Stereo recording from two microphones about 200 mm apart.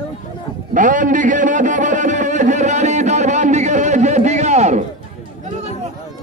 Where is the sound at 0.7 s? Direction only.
40° right (ahead or behind).